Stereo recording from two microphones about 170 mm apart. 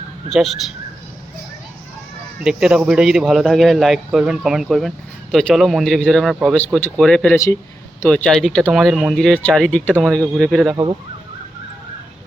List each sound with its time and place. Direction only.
0.3 s speech: centre (ahead or behind)
2.4 s speech: 5° right (ahead or behind)
7.3 s speech: 15° left (ahead or behind)
8.0 s speech: 5° left (ahead or behind)